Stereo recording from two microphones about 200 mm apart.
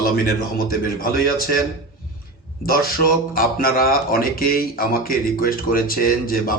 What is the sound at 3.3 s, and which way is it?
Speech, 45° left (ahead or behind).